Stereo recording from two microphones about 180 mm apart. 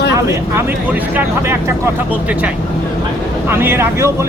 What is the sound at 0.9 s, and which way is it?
Speech, 10° right (ahead or behind).